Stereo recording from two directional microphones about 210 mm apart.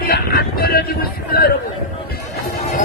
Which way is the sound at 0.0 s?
45° left (ahead or behind).